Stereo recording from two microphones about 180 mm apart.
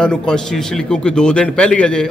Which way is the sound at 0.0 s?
5° left (ahead or behind).